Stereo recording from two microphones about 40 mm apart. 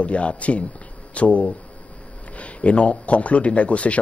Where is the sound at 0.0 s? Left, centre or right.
Left.